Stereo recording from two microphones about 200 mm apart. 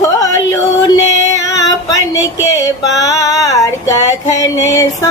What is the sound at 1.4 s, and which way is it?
Female singing, 15° left (ahead or behind).